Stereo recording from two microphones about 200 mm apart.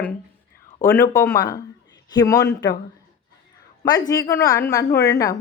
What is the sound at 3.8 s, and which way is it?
Speech, 20° left (ahead or behind).